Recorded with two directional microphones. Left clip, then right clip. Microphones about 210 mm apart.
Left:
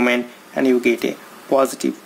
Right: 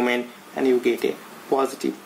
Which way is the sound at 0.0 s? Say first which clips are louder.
Left 5 dB; 45° left (ahead or behind).